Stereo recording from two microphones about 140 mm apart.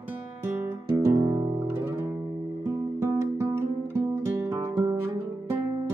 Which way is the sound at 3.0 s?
20° right (ahead or behind).